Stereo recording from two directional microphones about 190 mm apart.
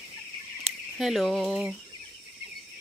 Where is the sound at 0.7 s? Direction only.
Centre (ahead or behind).